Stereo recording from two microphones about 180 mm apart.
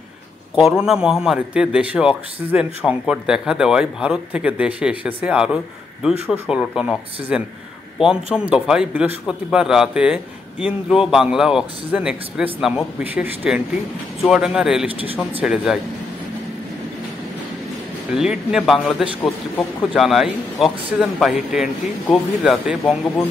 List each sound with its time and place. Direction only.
0.6 s a man's voice: centre (ahead or behind)
14.9 s speech: 30° right (ahead or behind)
15.4 s speech: 5° right (ahead or behind)
18.1 s speech: 5° right (ahead or behind)